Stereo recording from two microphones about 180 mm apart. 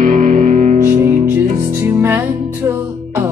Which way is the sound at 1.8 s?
10° right (ahead or behind).